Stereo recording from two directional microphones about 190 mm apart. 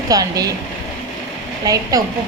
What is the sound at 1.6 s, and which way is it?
Speech, 20° right (ahead or behind).